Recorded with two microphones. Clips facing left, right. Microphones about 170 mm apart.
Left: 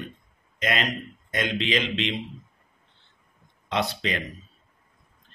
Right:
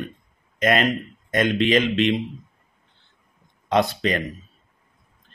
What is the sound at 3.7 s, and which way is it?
Speech, 50° right (ahead or behind).